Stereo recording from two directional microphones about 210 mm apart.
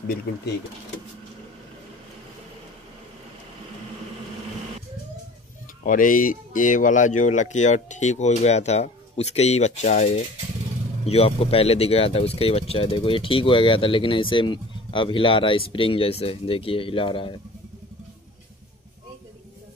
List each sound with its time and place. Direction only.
5.9 s speech: 40° left (ahead or behind); by 17.4 s 25° left (ahead or behind)